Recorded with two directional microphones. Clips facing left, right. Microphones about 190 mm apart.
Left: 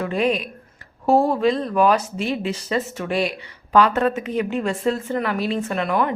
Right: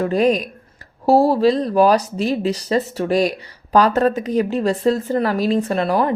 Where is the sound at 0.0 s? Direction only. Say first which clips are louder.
Right 5 dB; 40° right (ahead or behind).